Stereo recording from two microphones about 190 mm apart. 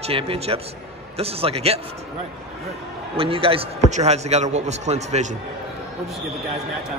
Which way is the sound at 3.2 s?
30° right (ahead or behind).